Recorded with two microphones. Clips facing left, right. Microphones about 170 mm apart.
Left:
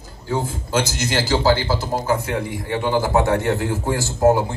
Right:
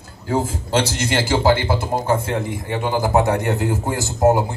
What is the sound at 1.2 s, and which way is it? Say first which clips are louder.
A man's voice: right 1 dB; 25° right (ahead or behind).